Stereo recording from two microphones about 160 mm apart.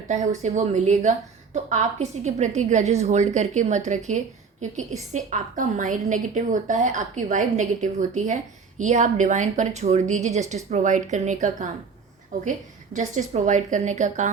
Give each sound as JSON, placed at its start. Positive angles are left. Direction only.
{"t": 0.4, "sound": "a woman's voice", "side_deg": -45}